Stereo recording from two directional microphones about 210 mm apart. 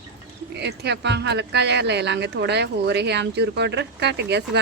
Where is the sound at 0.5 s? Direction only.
55° right (ahead or behind).